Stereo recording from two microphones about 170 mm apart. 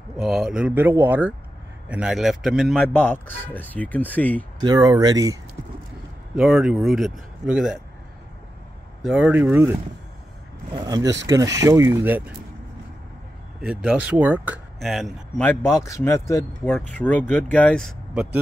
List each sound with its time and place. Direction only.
0.2 s speech: centre (ahead or behind)
4.6 s speech: 20° right (ahead or behind)
6.3 s speech: 5° right (ahead or behind)
9.0 s speech: 5° right (ahead or behind)
10.7 s speech: 25° right (ahead or behind)
13.6 s speech: 5° right (ahead or behind)
15.4 s speech: 15° left (ahead or behind); by 18.4 s 5° right (ahead or behind)